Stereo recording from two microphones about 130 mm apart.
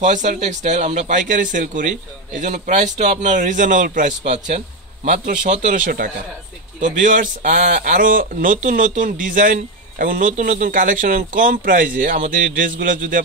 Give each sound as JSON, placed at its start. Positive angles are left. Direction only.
{"t": 0.0, "sound": "speech", "side_deg": -70}
{"t": 4.2, "sound": "speech", "side_deg": -55}